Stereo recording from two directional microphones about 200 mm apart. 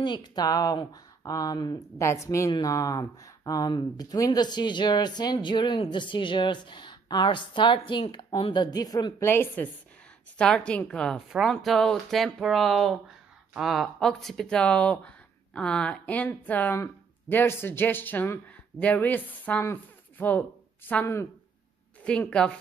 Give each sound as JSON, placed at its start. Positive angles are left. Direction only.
{"t": 0.0, "sound": "a woman's voice", "side_deg": 20}